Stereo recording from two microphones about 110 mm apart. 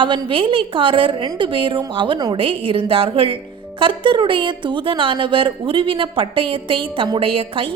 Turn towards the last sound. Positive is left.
turn(degrees=-55)  # may be behind; listen again after turning